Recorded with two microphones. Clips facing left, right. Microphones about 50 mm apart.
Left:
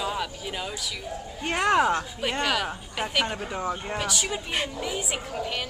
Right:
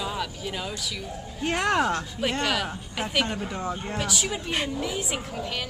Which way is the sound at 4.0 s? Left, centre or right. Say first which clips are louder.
Even; centre.